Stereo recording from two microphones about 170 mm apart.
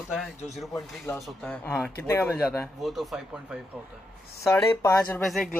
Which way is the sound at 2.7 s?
Centre (ahead or behind).